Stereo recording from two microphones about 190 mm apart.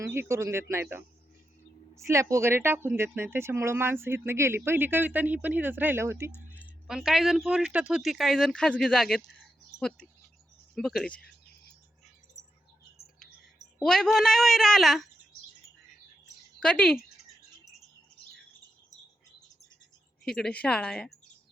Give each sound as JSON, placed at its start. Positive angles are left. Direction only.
{"t": 0.0, "sound": "speech", "side_deg": -15}
{"t": 6.8, "sound": "speech", "side_deg": 0}
{"t": 10.8, "sound": "speech", "side_deg": 0}
{"t": 12.4, "sound": "bird", "side_deg": 40}
{"t": 13.8, "sound": "speech", "side_deg": 5}
{"t": 16.6, "sound": "speech", "side_deg": 5}
{"t": 20.2, "sound": "speech", "side_deg": 5}